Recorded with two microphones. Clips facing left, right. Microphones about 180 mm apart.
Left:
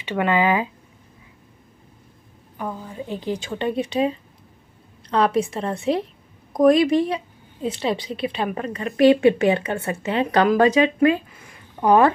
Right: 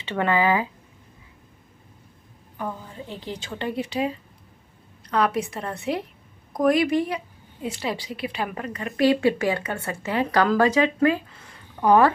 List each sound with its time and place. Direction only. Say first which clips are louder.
0.0 s speech: left 2 dB; 15° left (ahead or behind)
2.5 s a woman's voice: left 2 dB; 15° left (ahead or behind)